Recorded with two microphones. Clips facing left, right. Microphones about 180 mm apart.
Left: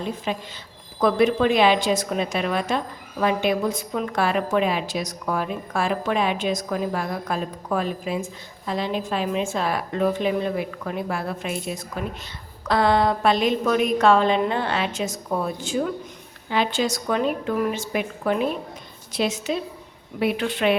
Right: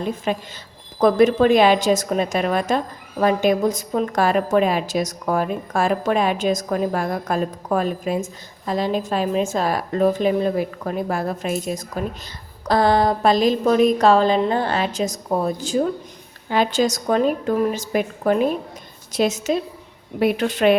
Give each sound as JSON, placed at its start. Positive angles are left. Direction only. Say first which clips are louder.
{"t": 0.3, "sound": "a woman's voice", "louder": "right 4 dB", "side_deg": -50}